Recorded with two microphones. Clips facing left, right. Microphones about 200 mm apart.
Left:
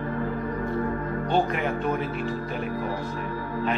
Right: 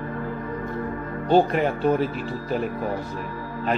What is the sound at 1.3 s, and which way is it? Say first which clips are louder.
Speech: right 7 dB; 35° right (ahead or behind).